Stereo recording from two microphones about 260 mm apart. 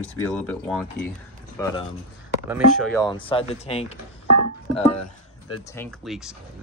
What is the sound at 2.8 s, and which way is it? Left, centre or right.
Speech, centre.